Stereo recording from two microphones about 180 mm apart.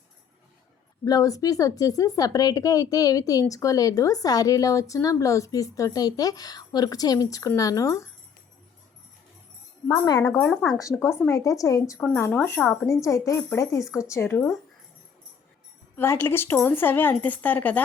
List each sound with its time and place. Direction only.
1.0 s speech: 20° left (ahead or behind)
9.9 s speech: 20° left (ahead or behind)
10.8 s speech: 20° left (ahead or behind)
16.0 s speech: 15° left (ahead or behind)